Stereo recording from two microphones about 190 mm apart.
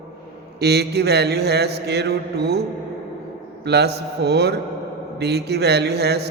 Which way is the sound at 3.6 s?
60° right (ahead or behind).